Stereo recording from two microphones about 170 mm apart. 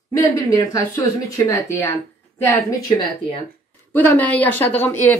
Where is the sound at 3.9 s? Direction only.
10° left (ahead or behind).